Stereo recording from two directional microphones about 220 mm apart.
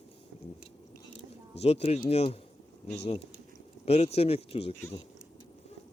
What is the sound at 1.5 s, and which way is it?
Speech, 30° left (ahead or behind).